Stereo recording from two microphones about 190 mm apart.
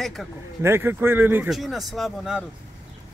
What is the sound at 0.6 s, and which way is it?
Speech, 10° right (ahead or behind).